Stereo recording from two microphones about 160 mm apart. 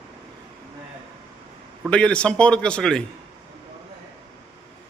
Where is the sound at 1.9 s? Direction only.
5° left (ahead or behind).